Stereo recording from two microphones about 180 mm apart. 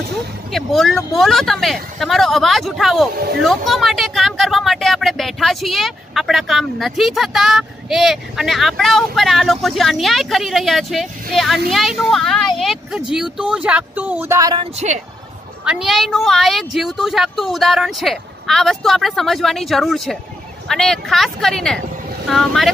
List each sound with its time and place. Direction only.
0.5 s speech: centre (ahead or behind); by 14.6 s 15° right (ahead or behind)
14.6 s a woman's voice: 35° right (ahead or behind)
15.6 s speech: 5° right (ahead or behind)